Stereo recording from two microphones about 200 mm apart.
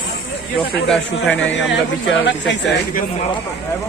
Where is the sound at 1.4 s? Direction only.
65° left (ahead or behind).